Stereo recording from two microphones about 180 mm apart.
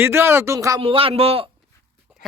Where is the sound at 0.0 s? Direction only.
15° right (ahead or behind).